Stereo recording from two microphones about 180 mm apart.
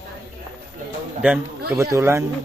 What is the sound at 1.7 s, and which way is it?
Speech, 15° right (ahead or behind).